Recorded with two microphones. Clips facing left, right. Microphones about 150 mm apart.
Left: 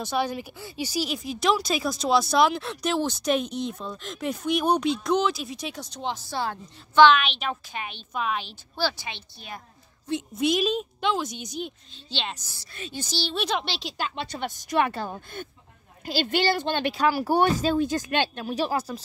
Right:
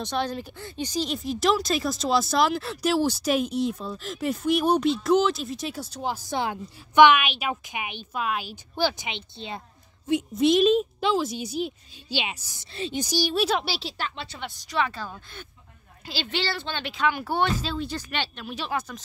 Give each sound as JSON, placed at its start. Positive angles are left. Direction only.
{"t": 0.0, "sound": "a woman's voice", "side_deg": 5}
{"t": 8.7, "sound": "speech", "side_deg": -15}
{"t": 10.3, "sound": "a woman's voice", "side_deg": 0}
{"t": 14.1, "sound": "a woman's voice", "side_deg": 45}
{"t": 16.1, "sound": "a woman's voice", "side_deg": 45}